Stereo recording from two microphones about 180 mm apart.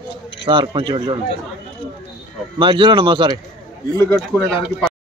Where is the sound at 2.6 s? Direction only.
30° right (ahead or behind).